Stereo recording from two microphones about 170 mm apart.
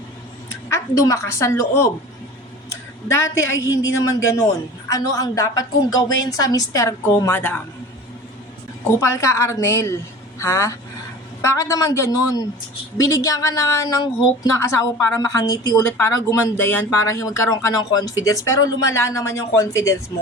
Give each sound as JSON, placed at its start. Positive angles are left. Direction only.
{"t": 0.7, "sound": "speech", "side_deg": 20}
{"t": 3.1, "sound": "a woman's voice", "side_deg": 15}
{"t": 9.0, "sound": "a woman's voice", "side_deg": 15}